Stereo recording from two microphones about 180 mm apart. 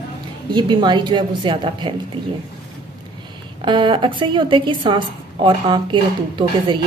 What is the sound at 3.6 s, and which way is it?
A woman's voice, 25° right (ahead or behind).